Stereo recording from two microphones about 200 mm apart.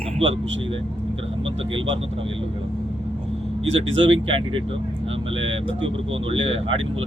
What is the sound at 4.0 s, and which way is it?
Speech, 25° right (ahead or behind).